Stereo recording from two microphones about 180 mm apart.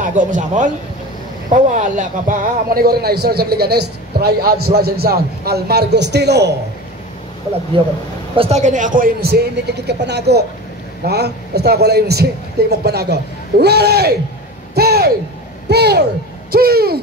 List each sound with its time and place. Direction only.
0.0 s a man's voice: 45° right (ahead or behind); by 6.5 s 65° right (ahead or behind)
7.8 s a man's voice: 25° right (ahead or behind)
8.4 s a man's voice: 40° right (ahead or behind); by 9.4 s 55° right (ahead or behind)
9.8 s speech: 70° right (ahead or behind)
14.8 s hoot: 60° right (ahead or behind)
15.7 s speech: 65° right (ahead or behind)
16.5 s hoot: 60° right (ahead or behind)